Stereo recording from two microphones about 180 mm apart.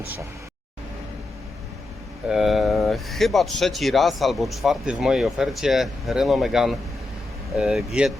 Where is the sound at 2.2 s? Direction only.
Centre (ahead or behind).